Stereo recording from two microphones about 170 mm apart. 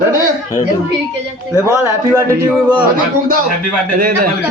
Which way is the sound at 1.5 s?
15° right (ahead or behind).